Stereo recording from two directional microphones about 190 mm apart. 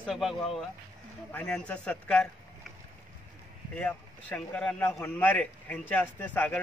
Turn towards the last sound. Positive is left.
turn(degrees=10)  # may be behind; listen again after turning